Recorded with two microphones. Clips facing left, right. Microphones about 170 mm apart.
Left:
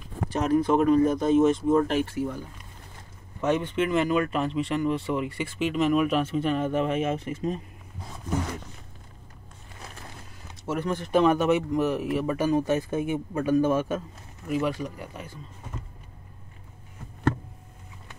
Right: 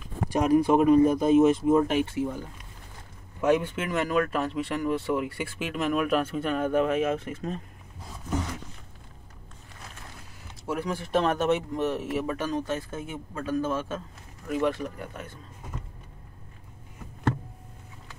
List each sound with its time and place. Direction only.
0.3 s speech: 10° right (ahead or behind)
3.3 s speech: 10° right (ahead or behind)
10.6 s speech: 5° right (ahead or behind)